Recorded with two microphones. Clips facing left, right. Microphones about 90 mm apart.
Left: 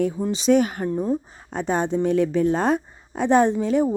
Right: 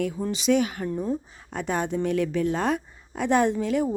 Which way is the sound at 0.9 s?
30° left (ahead or behind).